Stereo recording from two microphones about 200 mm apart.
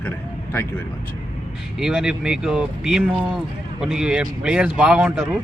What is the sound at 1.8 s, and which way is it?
Speech, centre (ahead or behind).